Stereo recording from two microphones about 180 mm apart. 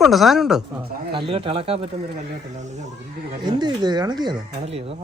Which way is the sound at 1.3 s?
30° right (ahead or behind).